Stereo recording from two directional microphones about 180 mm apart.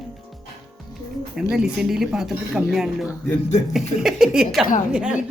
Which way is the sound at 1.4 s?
5° right (ahead or behind).